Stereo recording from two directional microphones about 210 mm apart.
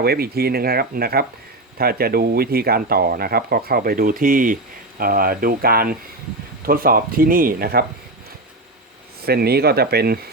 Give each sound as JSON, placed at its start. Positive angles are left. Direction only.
{"t": 0.0, "sound": "speech", "side_deg": -50}
{"t": 9.2, "sound": "speech", "side_deg": -50}